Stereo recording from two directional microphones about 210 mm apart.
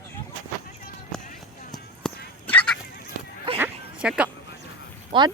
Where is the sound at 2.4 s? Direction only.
5° left (ahead or behind).